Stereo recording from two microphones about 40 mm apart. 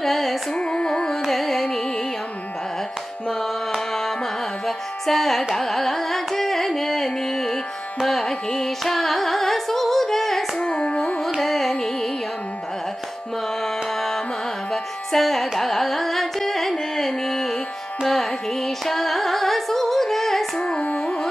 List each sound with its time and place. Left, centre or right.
0.0 s carnatic music: centre
0.6 s music: left
1.2 s music: centre
3.3 s tabla: centre
4.6 s music: centre
5.6 s carnatic music: centre
8.1 s music: centre
10.6 s carnatic music: left
11.4 s carnatic music: centre
14.7 s music: centre
15.6 s carnatic music: centre
18.0 s music: centre
20.8 s carnatic music: left